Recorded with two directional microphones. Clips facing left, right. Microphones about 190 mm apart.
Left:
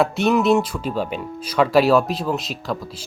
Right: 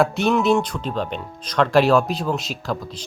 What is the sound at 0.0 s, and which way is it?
Speech, centre (ahead or behind).